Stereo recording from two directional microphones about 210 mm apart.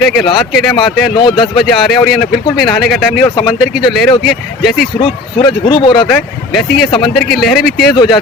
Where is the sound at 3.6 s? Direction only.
Centre (ahead or behind).